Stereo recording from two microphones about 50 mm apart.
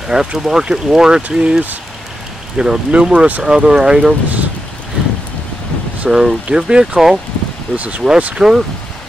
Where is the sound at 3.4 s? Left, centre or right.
Centre.